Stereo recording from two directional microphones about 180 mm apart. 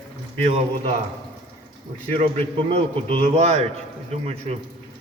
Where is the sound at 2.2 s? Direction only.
35° right (ahead or behind).